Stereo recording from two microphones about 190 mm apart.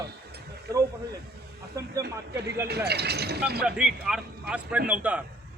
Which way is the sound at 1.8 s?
15° right (ahead or behind).